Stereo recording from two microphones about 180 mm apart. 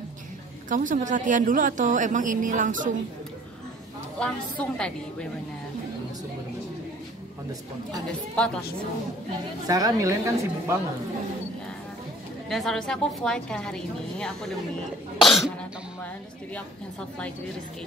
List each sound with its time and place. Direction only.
0.7 s speech: 45° right (ahead or behind)
4.2 s a woman's voice: 5° left (ahead or behind)
9.7 s a woman's voice: 20° right (ahead or behind)
12.4 s a woman's voice: 5° left (ahead or behind)